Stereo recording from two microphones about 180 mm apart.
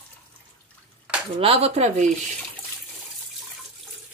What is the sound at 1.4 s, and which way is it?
Speech, 35° right (ahead or behind).